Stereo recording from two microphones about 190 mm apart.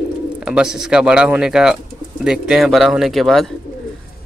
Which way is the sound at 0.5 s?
5° right (ahead or behind).